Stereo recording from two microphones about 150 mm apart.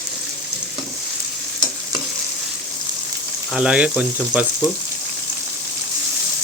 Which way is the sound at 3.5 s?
5° right (ahead or behind).